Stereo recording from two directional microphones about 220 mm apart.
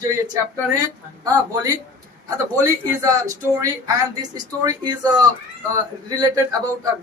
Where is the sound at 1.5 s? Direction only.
15° right (ahead or behind).